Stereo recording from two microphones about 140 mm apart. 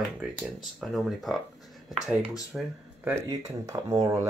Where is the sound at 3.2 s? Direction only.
20° right (ahead or behind).